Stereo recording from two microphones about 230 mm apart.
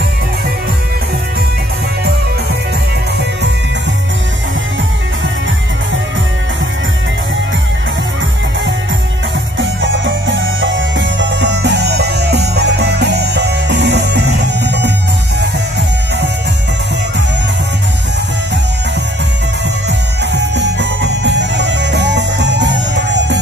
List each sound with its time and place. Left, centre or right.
9.6 s music: right
20.2 s music: right